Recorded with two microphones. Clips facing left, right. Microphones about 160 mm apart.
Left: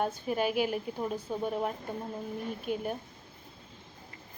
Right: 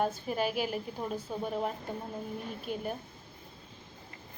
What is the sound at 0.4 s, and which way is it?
Speech, 40° right (ahead or behind).